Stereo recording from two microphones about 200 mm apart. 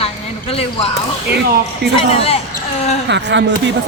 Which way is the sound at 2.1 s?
30° left (ahead or behind).